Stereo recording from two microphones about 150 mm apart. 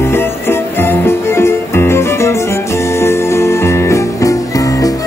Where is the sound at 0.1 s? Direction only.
15° left (ahead or behind).